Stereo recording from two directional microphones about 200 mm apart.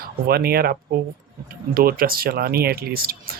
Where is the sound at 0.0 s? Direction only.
50° right (ahead or behind).